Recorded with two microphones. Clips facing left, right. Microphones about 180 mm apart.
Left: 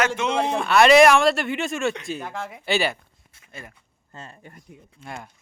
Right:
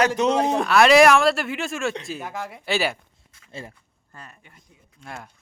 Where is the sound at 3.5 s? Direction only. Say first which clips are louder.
Right 4 dB; 30° right (ahead or behind).